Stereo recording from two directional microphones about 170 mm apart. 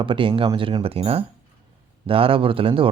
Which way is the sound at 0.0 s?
30° right (ahead or behind).